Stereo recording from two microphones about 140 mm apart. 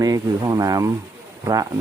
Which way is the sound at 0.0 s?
25° right (ahead or behind).